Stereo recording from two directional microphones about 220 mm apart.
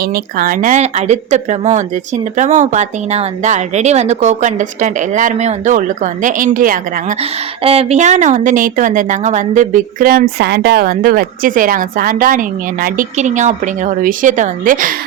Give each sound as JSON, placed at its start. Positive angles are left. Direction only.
{"t": 0.0, "sound": "a woman's voice", "side_deg": -40}
{"t": 7.2, "sound": "a woman's voice", "side_deg": -25}